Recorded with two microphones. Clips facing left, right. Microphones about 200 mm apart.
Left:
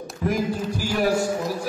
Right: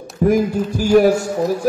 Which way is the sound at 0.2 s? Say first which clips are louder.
Right 9 dB; 50° right (ahead or behind).